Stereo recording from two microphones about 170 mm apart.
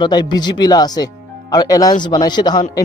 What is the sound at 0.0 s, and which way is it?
Speech, 25° left (ahead or behind).